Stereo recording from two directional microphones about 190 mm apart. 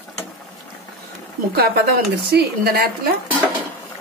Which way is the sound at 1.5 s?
55° right (ahead or behind).